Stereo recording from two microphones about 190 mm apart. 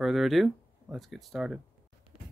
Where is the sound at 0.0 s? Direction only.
Centre (ahead or behind).